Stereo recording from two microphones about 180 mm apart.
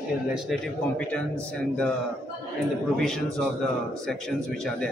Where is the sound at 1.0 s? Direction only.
5° left (ahead or behind).